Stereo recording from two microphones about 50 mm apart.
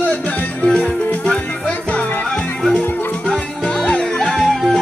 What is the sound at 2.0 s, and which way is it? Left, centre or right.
Music, left.